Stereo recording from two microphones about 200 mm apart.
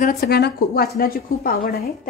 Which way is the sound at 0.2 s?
50° left (ahead or behind).